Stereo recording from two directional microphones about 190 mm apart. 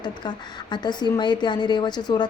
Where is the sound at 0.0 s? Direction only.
25° left (ahead or behind).